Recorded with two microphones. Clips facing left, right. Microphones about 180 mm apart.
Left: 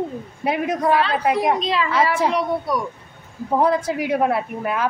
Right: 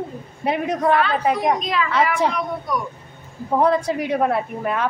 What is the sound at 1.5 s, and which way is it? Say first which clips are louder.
A woman's voice: left 1 dB; 30° left (ahead or behind).